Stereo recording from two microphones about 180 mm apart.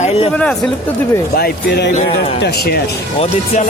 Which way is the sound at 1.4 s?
65° left (ahead or behind).